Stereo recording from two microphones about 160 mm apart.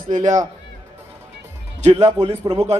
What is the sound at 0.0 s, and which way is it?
Speech, 50° right (ahead or behind).